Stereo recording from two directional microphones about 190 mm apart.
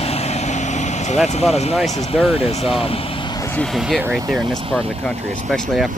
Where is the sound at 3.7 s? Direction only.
Centre (ahead or behind).